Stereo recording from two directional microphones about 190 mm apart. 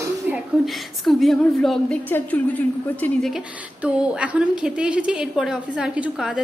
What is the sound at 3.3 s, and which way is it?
A woman's voice, 5° right (ahead or behind).